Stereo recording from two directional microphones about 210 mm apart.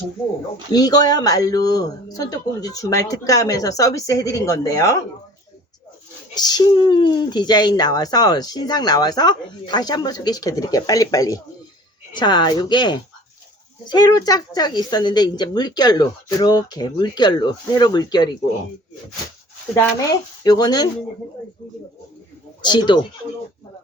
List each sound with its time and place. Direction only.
0.7 s speech: 20° left (ahead or behind)
6.3 s speech: 20° left (ahead or behind)
19.7 s speech: 15° left (ahead or behind)
22.6 s speech: 20° left (ahead or behind)